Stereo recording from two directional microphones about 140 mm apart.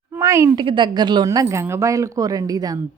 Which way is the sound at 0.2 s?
20° right (ahead or behind).